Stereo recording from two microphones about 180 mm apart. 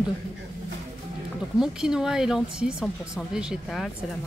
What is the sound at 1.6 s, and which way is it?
Speech, 5° right (ahead or behind).